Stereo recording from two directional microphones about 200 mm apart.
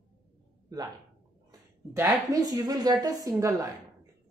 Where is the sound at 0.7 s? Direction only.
20° right (ahead or behind).